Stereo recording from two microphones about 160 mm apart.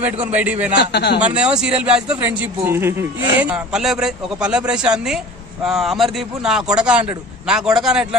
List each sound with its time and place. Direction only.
0.0 s a man's voice: 10° right (ahead or behind)
0.7 s a man's voice: 90° left
1.2 s a man's voice: 5° right (ahead or behind)